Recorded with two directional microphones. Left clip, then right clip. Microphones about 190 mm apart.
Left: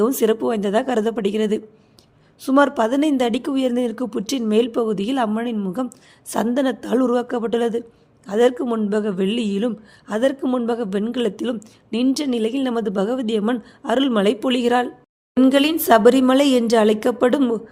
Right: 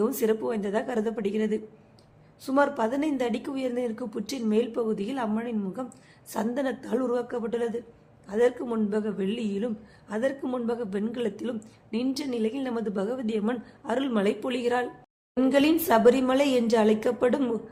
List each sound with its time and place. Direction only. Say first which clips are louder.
0.0 s speech: left 8 dB; 45° left (ahead or behind)